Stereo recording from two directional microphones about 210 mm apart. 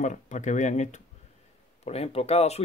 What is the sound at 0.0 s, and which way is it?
Speech, 35° left (ahead or behind).